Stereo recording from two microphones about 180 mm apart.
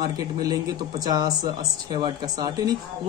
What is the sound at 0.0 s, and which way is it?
Speech, 20° right (ahead or behind).